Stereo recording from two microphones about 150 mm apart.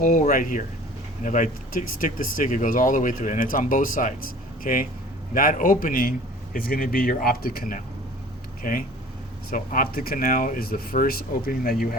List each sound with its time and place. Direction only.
0.0 s a man's voice: 65° left (ahead or behind)